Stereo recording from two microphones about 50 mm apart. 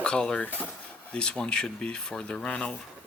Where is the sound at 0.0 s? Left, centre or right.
Centre.